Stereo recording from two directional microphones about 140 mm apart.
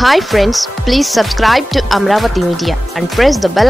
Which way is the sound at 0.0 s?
Centre (ahead or behind).